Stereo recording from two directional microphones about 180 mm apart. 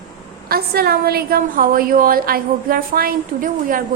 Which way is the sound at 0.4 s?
60° right (ahead or behind).